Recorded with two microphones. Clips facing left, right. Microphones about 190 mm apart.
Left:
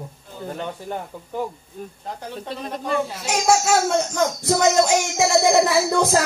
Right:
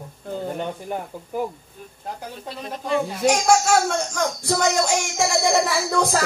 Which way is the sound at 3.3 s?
5° left (ahead or behind).